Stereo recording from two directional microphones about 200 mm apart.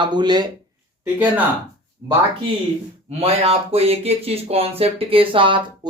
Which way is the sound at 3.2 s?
30° right (ahead or behind).